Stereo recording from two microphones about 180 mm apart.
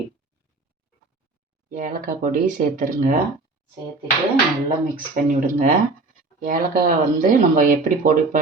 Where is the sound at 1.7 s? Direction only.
50° right (ahead or behind).